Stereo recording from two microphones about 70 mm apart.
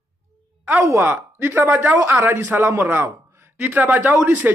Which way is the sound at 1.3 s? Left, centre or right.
Right.